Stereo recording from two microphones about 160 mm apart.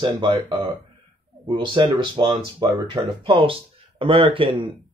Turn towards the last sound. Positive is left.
turn(degrees=-35)  # may be behind; listen again after turning